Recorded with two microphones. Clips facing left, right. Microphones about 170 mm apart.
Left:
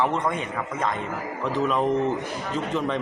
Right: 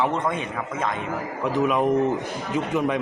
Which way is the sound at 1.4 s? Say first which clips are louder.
Right 2 dB; 15° right (ahead or behind).